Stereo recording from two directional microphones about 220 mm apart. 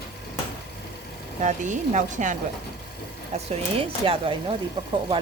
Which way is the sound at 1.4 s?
35° right (ahead or behind).